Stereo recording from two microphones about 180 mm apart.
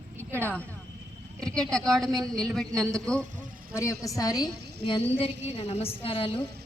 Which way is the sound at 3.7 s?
15° left (ahead or behind).